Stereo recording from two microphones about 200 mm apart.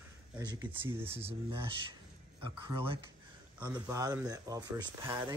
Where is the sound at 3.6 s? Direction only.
15° right (ahead or behind).